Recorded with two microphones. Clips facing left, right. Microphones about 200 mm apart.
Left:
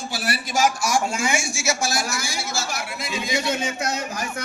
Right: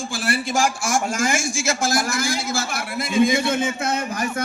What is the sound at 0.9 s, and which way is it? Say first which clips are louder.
A man's voice: right 1 dB; 50° right (ahead or behind).